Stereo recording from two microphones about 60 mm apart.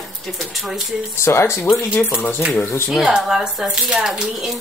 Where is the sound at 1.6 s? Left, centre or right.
Left.